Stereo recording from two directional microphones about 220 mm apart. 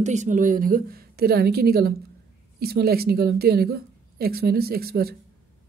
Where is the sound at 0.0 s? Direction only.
35° right (ahead or behind).